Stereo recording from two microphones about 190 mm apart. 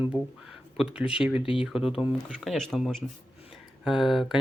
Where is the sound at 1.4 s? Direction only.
30° left (ahead or behind).